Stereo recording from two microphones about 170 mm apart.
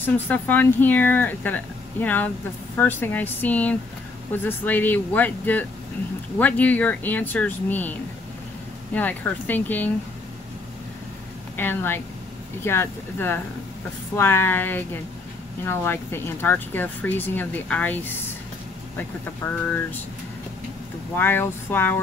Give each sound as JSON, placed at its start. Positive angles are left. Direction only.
{"t": 0.0, "sound": "speech", "side_deg": 10}
{"t": 8.9, "sound": "speech", "side_deg": 10}
{"t": 11.5, "sound": "speech", "side_deg": 10}
{"t": 19.4, "sound": "speech", "side_deg": 15}
{"t": 21.2, "sound": "speech", "side_deg": 15}